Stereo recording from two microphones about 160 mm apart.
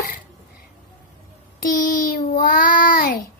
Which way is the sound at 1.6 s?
60° left (ahead or behind).